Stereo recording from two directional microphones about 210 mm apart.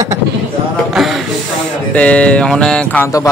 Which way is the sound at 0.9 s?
Centre (ahead or behind).